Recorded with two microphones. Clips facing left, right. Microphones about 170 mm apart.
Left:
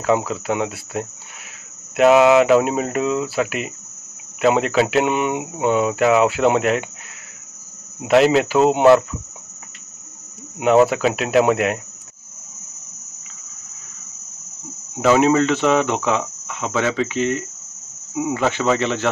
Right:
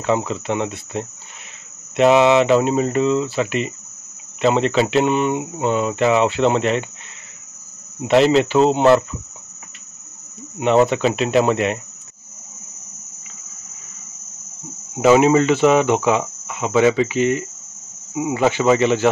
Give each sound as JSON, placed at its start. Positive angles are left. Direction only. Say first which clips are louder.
{"t": 0.0, "sound": "speech", "louder": "left 1 dB", "side_deg": 5}
{"t": 8.0, "sound": "speech", "louder": "even", "side_deg": 5}
{"t": 10.6, "sound": "speech", "louder": "left 1 dB", "side_deg": 5}
{"t": 15.0, "sound": "cricket", "louder": "right 2 dB", "side_deg": -10}